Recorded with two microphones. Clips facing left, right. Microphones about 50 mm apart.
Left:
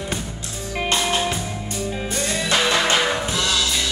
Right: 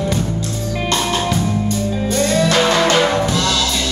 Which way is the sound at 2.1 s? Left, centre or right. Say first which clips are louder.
Right 7 dB; right.